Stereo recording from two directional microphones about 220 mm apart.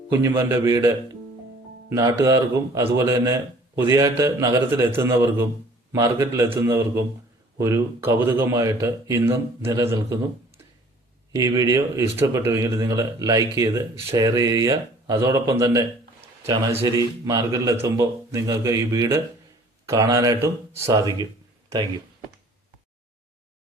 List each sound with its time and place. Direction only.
0.1 s speech: 10° right (ahead or behind)
11.3 s speech: 15° right (ahead or behind)